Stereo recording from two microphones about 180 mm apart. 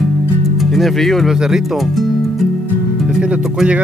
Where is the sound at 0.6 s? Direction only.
Centre (ahead or behind).